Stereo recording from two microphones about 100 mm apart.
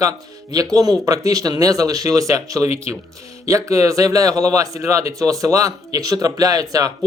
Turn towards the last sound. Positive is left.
turn(degrees=-35)  # may be behind; listen again after turning